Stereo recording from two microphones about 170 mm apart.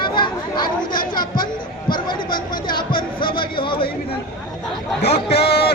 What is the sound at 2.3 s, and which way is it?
Chatter, 55° left (ahead or behind).